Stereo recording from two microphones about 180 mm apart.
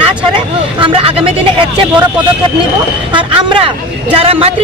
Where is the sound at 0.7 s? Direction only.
30° right (ahead or behind).